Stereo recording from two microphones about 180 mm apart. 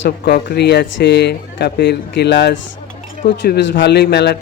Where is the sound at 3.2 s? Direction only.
60° left (ahead or behind).